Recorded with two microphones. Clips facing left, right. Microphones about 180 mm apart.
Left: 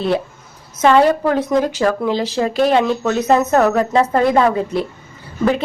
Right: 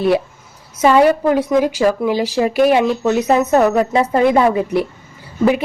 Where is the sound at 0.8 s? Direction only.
10° right (ahead or behind).